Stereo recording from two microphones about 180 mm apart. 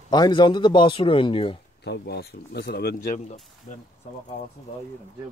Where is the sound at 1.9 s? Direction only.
65° left (ahead or behind).